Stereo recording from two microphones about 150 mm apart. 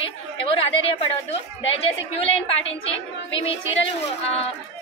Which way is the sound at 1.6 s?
40° left (ahead or behind).